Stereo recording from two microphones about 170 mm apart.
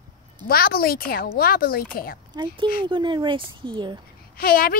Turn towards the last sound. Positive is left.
turn(degrees=60)  # may be behind; listen again after turning